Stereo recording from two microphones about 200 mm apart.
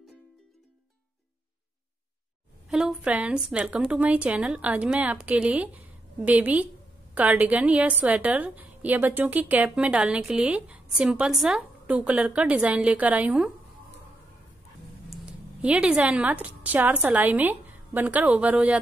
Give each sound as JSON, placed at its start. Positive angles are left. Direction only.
{"t": 2.7, "sound": "a woman's voice", "side_deg": -5}
{"t": 15.6, "sound": "a woman's voice", "side_deg": -5}